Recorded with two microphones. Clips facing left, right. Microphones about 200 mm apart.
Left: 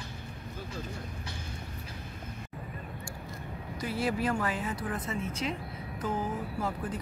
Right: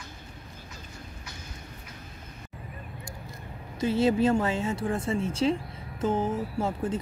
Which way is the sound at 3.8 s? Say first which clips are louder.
Right 8 dB; 25° right (ahead or behind).